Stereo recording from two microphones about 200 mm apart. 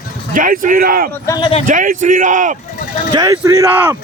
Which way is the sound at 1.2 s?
20° left (ahead or behind).